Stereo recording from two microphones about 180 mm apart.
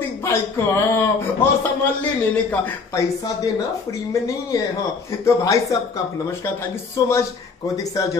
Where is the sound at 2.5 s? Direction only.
15° left (ahead or behind).